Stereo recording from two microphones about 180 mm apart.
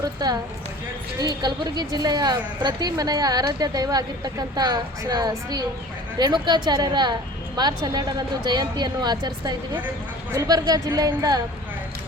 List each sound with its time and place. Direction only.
1.2 s speech: 20° right (ahead or behind)